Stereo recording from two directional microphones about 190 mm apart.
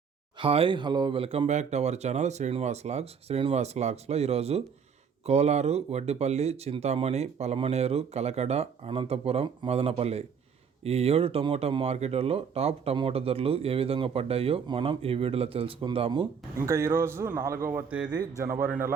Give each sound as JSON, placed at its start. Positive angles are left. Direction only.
{"t": 0.3, "sound": "speech", "side_deg": -30}
{"t": 16.6, "sound": "speech", "side_deg": -15}